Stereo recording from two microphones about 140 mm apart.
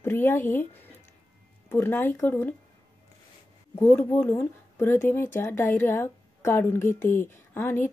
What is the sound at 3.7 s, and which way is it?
Speech, 15° left (ahead or behind).